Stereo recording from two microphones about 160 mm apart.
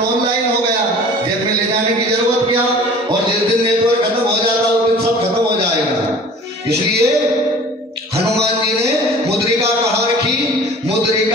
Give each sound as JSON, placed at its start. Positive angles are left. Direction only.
{"t": 6.7, "sound": "music", "side_deg": -85}